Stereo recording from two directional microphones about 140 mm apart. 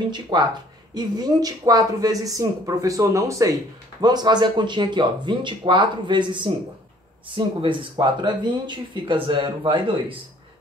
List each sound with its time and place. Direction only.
0.1 s speech: 30° right (ahead or behind)